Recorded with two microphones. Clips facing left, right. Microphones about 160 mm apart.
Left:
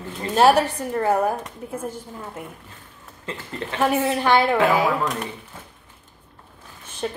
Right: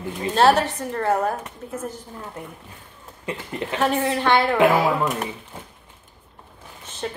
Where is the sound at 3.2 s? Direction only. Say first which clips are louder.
Right 2 dB; 15° right (ahead or behind).